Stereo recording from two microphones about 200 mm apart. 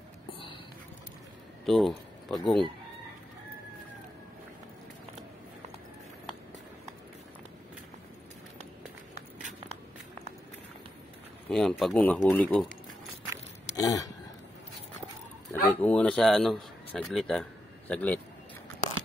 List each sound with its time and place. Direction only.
1.7 s speech: centre (ahead or behind)
11.4 s speech: centre (ahead or behind)
13.7 s speech: 15° left (ahead or behind)
15.5 s a man's voice: 5° left (ahead or behind)